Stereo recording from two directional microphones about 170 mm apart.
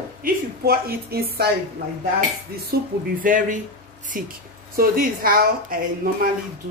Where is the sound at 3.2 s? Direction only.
50° right (ahead or behind).